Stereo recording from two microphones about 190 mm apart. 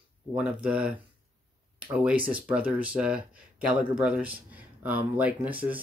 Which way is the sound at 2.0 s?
5° right (ahead or behind).